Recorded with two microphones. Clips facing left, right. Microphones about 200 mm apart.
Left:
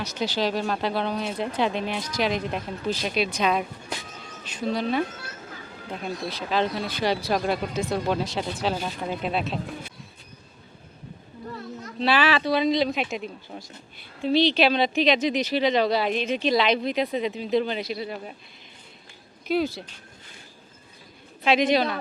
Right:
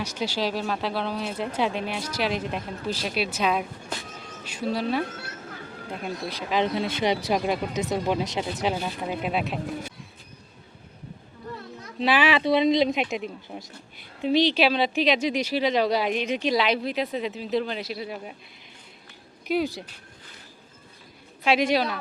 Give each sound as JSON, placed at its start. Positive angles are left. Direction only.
{"t": 0.0, "sound": "speech", "side_deg": -10}
{"t": 11.9, "sound": "speech", "side_deg": -15}
{"t": 19.5, "sound": "speech", "side_deg": -15}
{"t": 21.4, "sound": "speech", "side_deg": -10}